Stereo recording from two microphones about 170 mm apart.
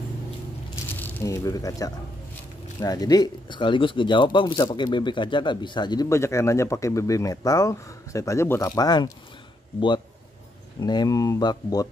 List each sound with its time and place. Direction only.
0.9 s speech: 15° left (ahead or behind)